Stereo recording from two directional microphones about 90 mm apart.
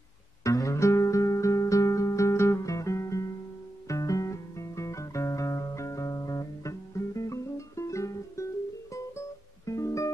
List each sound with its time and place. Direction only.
0.4 s music: 35° left (ahead or behind)
9.7 s music: 35° left (ahead or behind)